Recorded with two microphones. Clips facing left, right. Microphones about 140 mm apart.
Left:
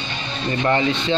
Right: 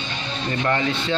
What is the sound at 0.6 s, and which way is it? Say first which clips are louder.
Speech: left 4 dB; 20° left (ahead or behind).